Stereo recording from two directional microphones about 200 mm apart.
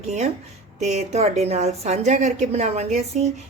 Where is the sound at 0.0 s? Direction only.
35° right (ahead or behind).